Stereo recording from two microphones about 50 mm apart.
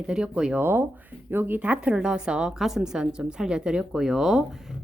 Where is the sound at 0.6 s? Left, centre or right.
Right; by 2.5 s centre.